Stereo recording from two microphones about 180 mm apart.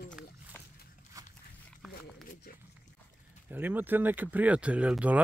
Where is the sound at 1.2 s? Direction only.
20° right (ahead or behind).